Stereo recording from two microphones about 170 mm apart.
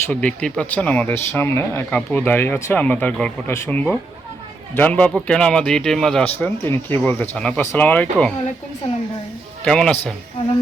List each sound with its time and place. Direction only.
0.1 s speech: 5° left (ahead or behind)
9.6 s a man's voice: 5° left (ahead or behind)